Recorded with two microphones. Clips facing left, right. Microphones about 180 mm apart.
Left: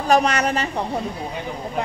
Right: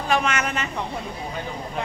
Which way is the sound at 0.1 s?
35° left (ahead or behind).